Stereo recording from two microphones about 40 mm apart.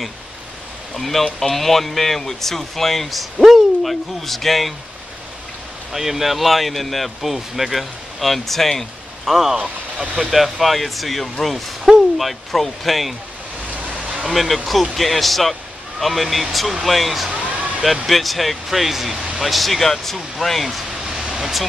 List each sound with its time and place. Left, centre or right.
0.9 s speech: centre
5.9 s speech: centre
9.2 s speech: centre
9.6 s speech: centre
10.3 s speech: centre
14.2 s speech: centre
17.3 s a sound: right
18.0 s speech: centre
21.0 s vehicle: centre